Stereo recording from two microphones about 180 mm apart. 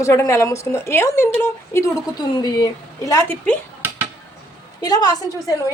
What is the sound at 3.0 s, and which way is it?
Speech, 15° left (ahead or behind).